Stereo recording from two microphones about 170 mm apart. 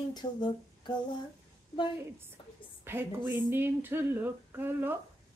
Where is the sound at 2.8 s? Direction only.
15° right (ahead or behind).